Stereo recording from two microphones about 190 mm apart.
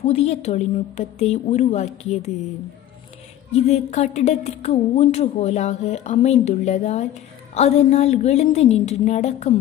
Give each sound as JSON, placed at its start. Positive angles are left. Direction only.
{"t": 0.0, "sound": "a woman's voice", "side_deg": 35}
{"t": 3.6, "sound": "a woman's voice", "side_deg": 35}